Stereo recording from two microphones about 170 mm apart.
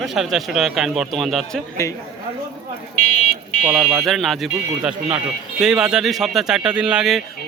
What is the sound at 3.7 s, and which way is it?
Speech, 5° right (ahead or behind).